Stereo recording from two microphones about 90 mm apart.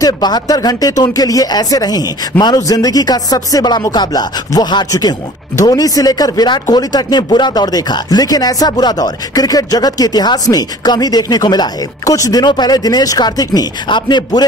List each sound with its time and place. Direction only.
0.0 s speech: 45° left (ahead or behind)
13.8 s speech: 60° left (ahead or behind)